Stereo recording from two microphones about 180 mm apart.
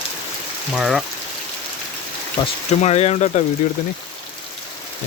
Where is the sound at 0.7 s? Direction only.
Centre (ahead or behind).